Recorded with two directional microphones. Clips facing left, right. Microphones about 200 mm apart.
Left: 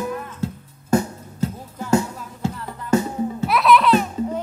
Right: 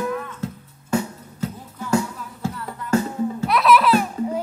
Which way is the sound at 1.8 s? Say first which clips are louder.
Left 2 dB; 20° left (ahead or behind).